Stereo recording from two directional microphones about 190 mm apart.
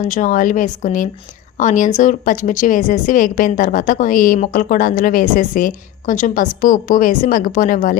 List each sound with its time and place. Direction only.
0.0 s a woman's voice: 40° left (ahead or behind)